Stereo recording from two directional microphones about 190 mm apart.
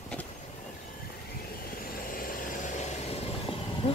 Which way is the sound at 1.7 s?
50° left (ahead or behind).